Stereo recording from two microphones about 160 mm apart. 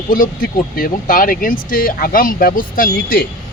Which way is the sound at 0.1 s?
60° left (ahead or behind).